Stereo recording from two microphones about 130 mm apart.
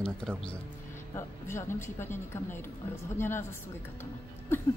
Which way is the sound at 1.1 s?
20° left (ahead or behind).